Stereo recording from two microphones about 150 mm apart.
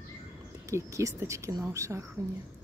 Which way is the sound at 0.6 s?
20° right (ahead or behind).